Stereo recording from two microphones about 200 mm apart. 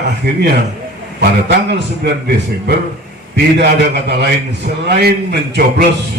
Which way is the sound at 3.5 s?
55° right (ahead or behind).